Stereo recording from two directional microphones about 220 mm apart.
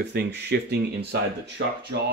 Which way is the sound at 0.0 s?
50° right (ahead or behind).